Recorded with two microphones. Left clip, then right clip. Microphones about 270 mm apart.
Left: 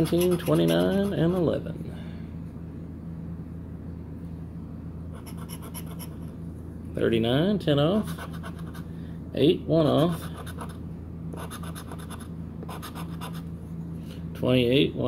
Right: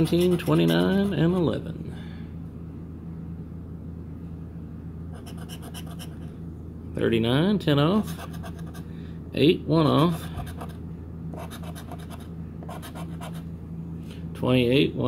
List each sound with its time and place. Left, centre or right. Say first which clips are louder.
0.4 s speech: even; centre
7.0 s speech: even; centre
9.3 s speech: right 1 dB; centre
14.4 s speech: right 1 dB; centre